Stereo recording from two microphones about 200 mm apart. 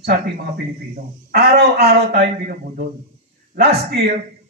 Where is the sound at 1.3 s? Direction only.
55° right (ahead or behind).